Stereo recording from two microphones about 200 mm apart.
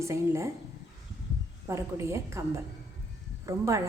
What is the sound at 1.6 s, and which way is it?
A woman's voice, 15° right (ahead or behind).